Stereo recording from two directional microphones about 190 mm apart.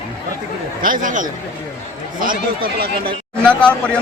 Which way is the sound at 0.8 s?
45° right (ahead or behind).